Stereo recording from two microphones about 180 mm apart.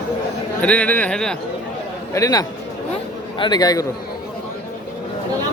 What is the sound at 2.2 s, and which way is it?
A man's voice, 20° left (ahead or behind).